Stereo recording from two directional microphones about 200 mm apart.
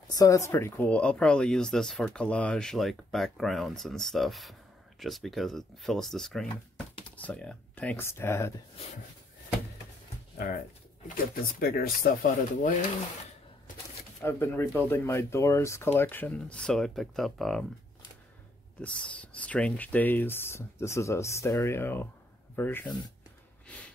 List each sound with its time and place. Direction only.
0.1 s speech: 15° left (ahead or behind)
10.3 s speech: 45° left (ahead or behind)
11.6 s speech: 50° left (ahead or behind)
14.2 s speech: 10° left (ahead or behind)
18.8 s speech: 5° left (ahead or behind)